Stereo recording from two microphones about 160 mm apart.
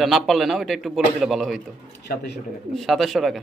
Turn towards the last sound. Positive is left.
turn(degrees=0)  # may be behind; listen again after turning